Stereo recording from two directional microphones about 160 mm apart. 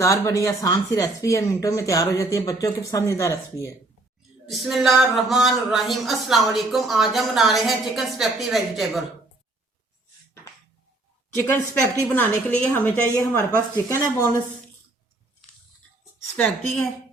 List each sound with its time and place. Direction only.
0.0 s speech: 20° left (ahead or behind)
4.4 s speech: centre (ahead or behind)
11.4 s a woman's voice: 10° left (ahead or behind)